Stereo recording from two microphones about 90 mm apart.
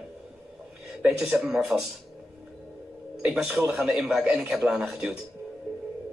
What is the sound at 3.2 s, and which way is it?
A man's voice, 5° right (ahead or behind).